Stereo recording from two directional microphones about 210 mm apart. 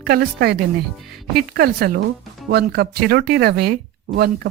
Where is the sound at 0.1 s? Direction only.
50° right (ahead or behind).